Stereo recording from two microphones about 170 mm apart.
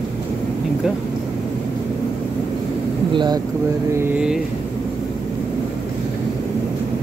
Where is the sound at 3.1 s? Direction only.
25° right (ahead or behind).